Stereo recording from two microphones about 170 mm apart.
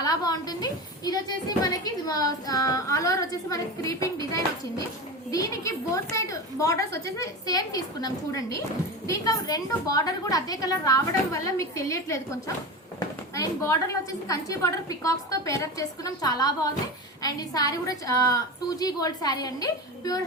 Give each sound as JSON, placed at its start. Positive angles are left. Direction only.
{"t": 0.0, "sound": "a woman's voice", "side_deg": 20}